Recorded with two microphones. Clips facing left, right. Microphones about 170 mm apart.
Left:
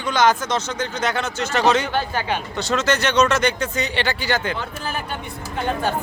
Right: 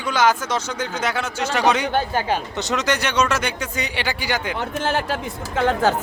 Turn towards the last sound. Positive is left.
turn(degrees=-90)